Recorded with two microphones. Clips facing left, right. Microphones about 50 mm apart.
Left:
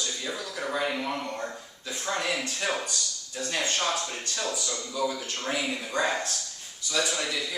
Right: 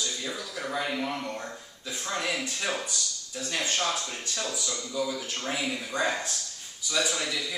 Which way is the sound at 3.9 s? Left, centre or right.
Centre.